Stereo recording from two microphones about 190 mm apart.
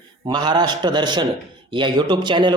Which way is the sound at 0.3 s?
20° right (ahead or behind).